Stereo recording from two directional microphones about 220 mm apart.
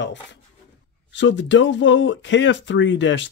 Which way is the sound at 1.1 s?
55° left (ahead or behind).